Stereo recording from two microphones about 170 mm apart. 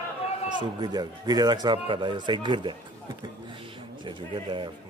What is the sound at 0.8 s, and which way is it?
Speech, 25° right (ahead or behind).